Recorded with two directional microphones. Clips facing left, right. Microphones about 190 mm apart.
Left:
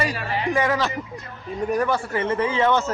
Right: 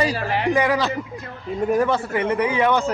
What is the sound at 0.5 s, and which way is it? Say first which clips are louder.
Speech: right 2 dB; 15° right (ahead or behind).